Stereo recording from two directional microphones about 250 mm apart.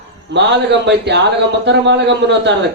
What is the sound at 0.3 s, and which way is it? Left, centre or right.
Speech, right.